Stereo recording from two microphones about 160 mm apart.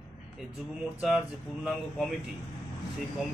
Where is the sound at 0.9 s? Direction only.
5° right (ahead or behind).